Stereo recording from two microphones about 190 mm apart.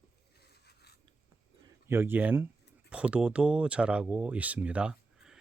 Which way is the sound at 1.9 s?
10° right (ahead or behind).